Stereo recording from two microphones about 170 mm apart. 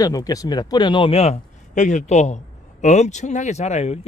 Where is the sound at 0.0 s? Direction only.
20° left (ahead or behind).